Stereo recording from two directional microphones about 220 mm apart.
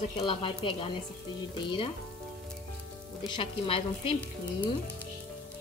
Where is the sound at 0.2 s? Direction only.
25° left (ahead or behind).